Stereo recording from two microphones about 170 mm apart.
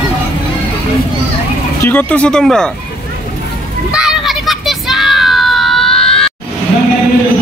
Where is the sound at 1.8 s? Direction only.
10° left (ahead or behind).